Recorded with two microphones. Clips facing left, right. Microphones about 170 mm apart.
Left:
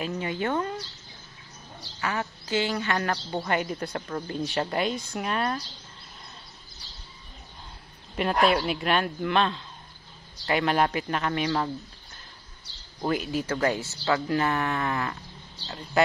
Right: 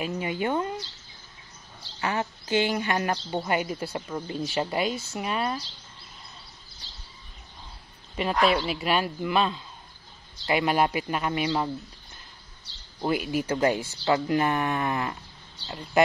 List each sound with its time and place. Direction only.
0.0 s speech: 10° right (ahead or behind)
2.0 s speech: 20° right (ahead or behind)
8.2 s speech: centre (ahead or behind)
13.0 s speech: 10° right (ahead or behind)